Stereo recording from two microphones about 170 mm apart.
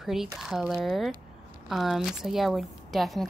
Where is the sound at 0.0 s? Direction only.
Centre (ahead or behind).